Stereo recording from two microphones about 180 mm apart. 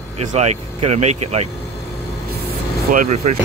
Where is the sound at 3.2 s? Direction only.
40° right (ahead or behind).